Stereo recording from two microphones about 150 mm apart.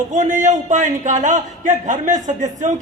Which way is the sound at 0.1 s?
55° right (ahead or behind).